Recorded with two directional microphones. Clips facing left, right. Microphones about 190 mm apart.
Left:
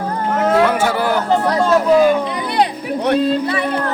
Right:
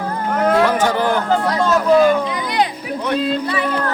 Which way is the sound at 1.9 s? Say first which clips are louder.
Even; 5° left (ahead or behind).